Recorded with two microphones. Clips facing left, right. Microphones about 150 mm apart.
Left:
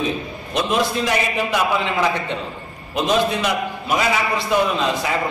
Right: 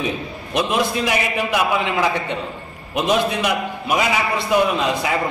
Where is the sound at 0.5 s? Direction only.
15° right (ahead or behind).